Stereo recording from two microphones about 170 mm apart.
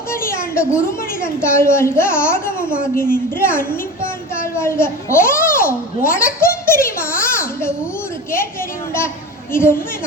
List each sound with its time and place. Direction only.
0.1 s a woman's voice: 15° left (ahead or behind)
3.3 s a sound: 15° left (ahead or behind)
9.5 s a woman's voice: 15° left (ahead or behind)